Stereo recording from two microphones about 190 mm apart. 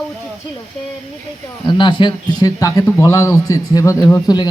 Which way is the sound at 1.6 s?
25° left (ahead or behind).